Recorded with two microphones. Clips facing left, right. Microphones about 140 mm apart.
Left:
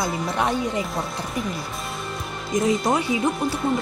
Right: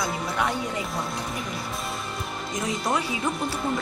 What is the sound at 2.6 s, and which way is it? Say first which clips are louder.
Speech: left 5 dB; 25° left (ahead or behind).